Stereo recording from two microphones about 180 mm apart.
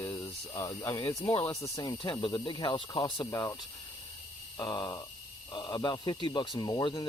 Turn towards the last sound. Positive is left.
turn(degrees=25)  # may be behind; listen again after turning